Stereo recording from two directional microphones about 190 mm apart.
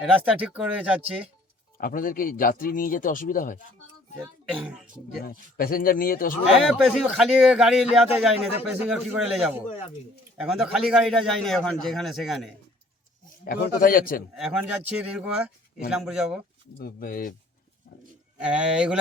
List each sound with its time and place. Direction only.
0.0 s a man's voice: 5° right (ahead or behind)
1.8 s speech: 45° left (ahead or behind)
4.2 s a man's voice: 5° right (ahead or behind)
5.2 s speech: 50° left (ahead or behind)
6.7 s a man's voice: centre (ahead or behind)
13.4 s speech: 50° left (ahead or behind)
14.3 s a man's voice: centre (ahead or behind)
16.7 s speech: 50° left (ahead or behind)
18.3 s a man's voice: 5° right (ahead or behind)